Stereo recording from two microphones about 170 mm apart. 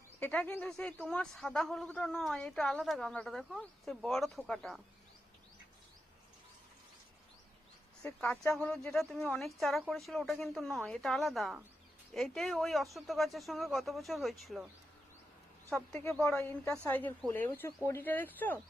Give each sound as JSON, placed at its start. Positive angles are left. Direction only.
{"t": 0.2, "sound": "a woman's voice", "side_deg": 10}
{"t": 8.2, "sound": "a woman's voice", "side_deg": 5}
{"t": 15.7, "sound": "a woman's voice", "side_deg": 0}
{"t": 16.0, "sound": "speech", "side_deg": 15}
{"t": 16.4, "sound": "a woman's voice", "side_deg": 5}